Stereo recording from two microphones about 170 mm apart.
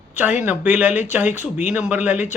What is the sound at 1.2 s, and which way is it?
Speech, 45° left (ahead or behind).